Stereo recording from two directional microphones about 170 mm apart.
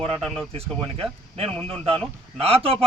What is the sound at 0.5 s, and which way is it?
A man's voice, 35° right (ahead or behind).